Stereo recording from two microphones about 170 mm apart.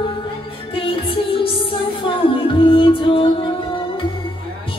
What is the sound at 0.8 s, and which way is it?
Music, 30° left (ahead or behind).